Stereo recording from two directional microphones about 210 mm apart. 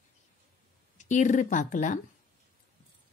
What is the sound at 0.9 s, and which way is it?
Speech, 35° left (ahead or behind).